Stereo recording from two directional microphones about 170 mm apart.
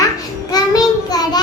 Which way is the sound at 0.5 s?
25° left (ahead or behind).